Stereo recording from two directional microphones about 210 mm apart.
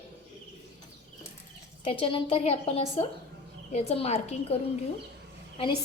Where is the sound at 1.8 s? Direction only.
25° left (ahead or behind).